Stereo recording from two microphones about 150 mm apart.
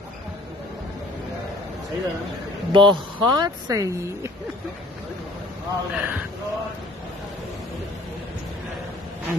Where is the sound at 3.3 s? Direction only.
25° right (ahead or behind).